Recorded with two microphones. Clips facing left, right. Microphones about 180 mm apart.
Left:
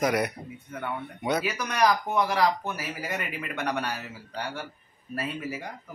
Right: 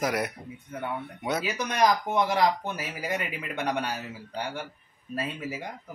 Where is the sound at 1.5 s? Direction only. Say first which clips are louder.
Right 4 dB; 20° right (ahead or behind).